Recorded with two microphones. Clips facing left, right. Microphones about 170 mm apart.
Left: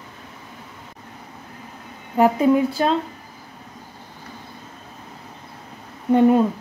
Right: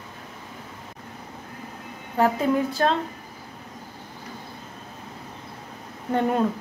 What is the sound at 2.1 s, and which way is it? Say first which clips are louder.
Speech: left 5 dB; 15° left (ahead or behind).